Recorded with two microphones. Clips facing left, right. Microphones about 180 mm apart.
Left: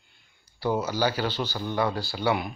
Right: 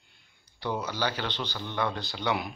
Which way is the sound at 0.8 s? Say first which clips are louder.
Left 5 dB; 10° left (ahead or behind).